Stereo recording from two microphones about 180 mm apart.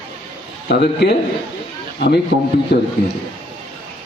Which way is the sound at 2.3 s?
60° left (ahead or behind).